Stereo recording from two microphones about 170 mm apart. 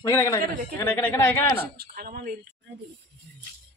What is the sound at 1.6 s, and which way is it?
Speech, 60° right (ahead or behind).